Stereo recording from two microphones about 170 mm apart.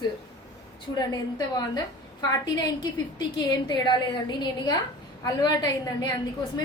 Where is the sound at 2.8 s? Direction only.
25° left (ahead or behind).